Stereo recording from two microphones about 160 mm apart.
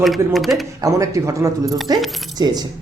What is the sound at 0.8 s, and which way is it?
Speech, 20° right (ahead or behind).